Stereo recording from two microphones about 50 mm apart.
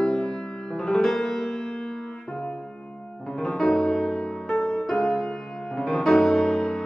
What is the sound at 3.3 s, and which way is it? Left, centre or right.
Music, centre.